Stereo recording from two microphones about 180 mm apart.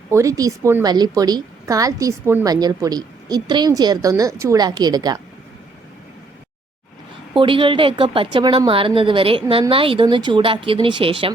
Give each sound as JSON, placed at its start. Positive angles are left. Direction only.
{"t": 0.1, "sound": "a woman's voice", "side_deg": -15}
{"t": 7.3, "sound": "a woman's voice", "side_deg": -30}